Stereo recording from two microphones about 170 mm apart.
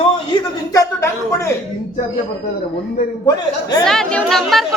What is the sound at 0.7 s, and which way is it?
Speech, 20° left (ahead or behind).